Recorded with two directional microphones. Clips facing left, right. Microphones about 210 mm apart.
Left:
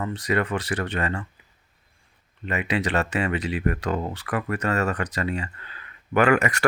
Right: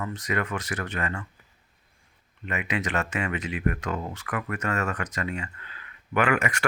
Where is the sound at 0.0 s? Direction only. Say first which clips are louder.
Left 5 dB; 30° left (ahead or behind).